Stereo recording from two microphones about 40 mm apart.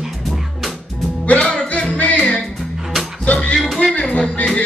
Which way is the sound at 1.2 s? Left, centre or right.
Left.